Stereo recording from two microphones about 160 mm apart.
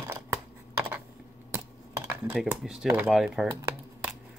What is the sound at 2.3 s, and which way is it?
Speech, 5° right (ahead or behind).